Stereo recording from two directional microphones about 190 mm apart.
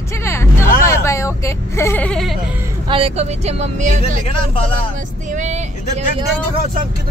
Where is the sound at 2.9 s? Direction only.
30° right (ahead or behind).